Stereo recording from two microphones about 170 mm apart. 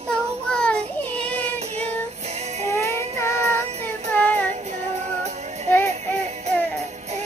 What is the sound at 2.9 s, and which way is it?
Music, 15° left (ahead or behind).